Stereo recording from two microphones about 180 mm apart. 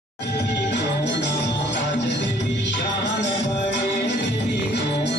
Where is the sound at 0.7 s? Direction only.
75° left (ahead or behind).